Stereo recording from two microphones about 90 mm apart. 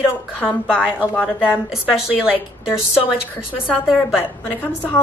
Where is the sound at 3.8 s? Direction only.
5° right (ahead or behind).